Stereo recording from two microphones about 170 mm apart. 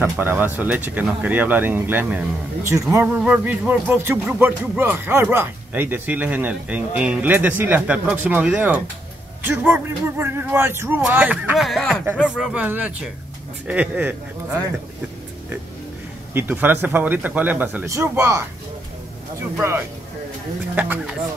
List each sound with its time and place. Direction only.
0.0 s a man's voice: 10° right (ahead or behind)
16.3 s a man's voice: 10° right (ahead or behind)
20.7 s a man's voice: 10° right (ahead or behind)